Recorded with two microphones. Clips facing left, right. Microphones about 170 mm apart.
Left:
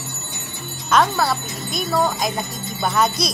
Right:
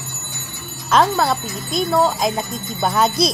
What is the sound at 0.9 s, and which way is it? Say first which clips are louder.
Speech: right 2 dB; 20° right (ahead or behind).